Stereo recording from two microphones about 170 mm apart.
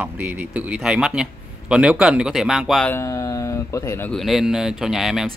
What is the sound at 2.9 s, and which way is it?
Speech, 15° left (ahead or behind).